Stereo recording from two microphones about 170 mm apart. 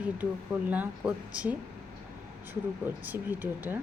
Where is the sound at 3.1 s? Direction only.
10° right (ahead or behind).